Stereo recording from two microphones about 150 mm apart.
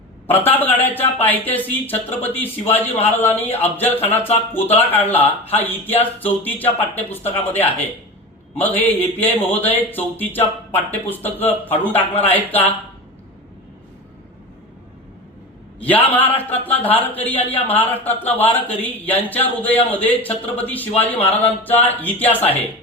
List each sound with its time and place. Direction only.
0.3 s speech: 10° left (ahead or behind)
2.8 s speech: 45° left (ahead or behind)
3.5 s speech: 15° left (ahead or behind)
15.8 s speech: 10° left (ahead or behind)